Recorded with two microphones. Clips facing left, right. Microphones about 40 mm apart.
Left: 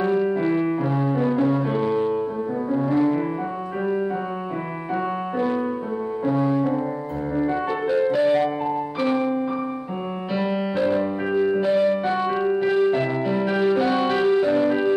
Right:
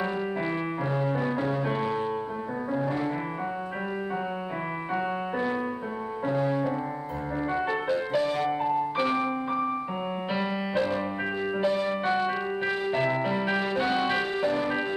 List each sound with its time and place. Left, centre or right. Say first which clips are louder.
0.0 s music: left 8 dB; centre
8.2 s music: left 8 dB; centre
11.0 s music: left 8 dB; centre
11.6 s music: left 3 dB; centre
11.9 s music: left 4 dB; centre